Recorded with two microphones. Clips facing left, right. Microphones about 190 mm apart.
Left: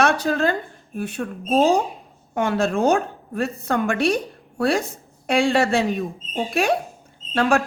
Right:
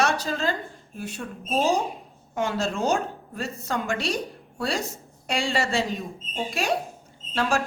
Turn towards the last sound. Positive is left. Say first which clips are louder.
# left 6 dB
turn(degrees=60)  # may be behind; listen again after turning